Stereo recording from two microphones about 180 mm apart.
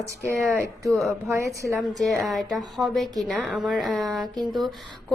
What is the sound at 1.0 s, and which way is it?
Speech, centre (ahead or behind).